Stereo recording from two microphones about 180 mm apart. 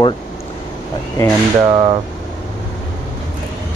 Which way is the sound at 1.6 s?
25° right (ahead or behind).